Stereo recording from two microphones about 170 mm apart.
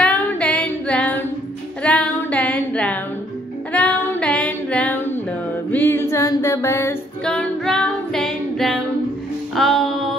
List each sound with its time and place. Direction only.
0.0 s female singing: 10° left (ahead or behind)
1.8 s music: 5° left (ahead or behind)
3.7 s female singing: 10° left (ahead or behind)
5.7 s music: 10° left (ahead or behind)
7.2 s female singing: 5° left (ahead or behind)
9.6 s music: centre (ahead or behind)